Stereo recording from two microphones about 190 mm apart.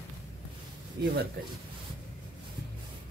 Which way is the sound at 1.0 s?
55° right (ahead or behind).